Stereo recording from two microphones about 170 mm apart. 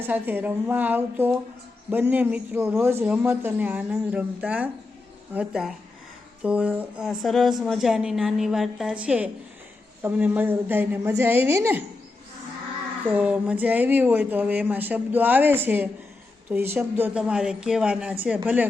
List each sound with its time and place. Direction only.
0.0 s a woman's voice: 10° right (ahead or behind)
13.1 s speech: 10° right (ahead or behind)